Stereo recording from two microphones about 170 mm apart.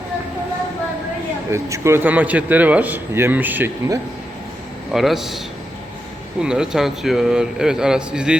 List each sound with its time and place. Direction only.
1.5 s speech: 15° right (ahead or behind)
4.9 s a man's voice: centre (ahead or behind)
6.4 s a man's voice: 5° right (ahead or behind)